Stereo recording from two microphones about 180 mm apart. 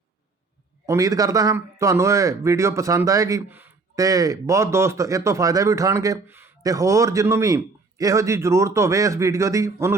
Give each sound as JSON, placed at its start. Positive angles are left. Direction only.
{"t": 0.9, "sound": "a man's voice", "side_deg": -20}